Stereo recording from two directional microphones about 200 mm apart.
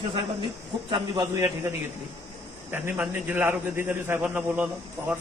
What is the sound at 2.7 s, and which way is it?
A man's voice, 10° right (ahead or behind).